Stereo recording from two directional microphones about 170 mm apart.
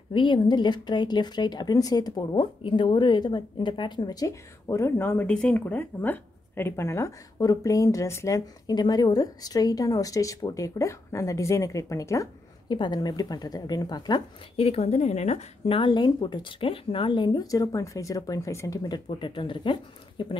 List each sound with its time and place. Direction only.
0.1 s speech: 30° left (ahead or behind)